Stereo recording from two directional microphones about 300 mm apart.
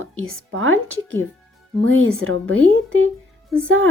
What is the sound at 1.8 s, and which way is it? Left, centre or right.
A woman's voice, right.